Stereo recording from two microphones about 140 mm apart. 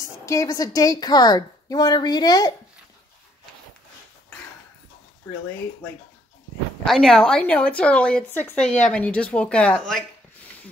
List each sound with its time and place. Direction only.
0.0 s a woman's voice: 20° left (ahead or behind)
6.8 s speech: centre (ahead or behind)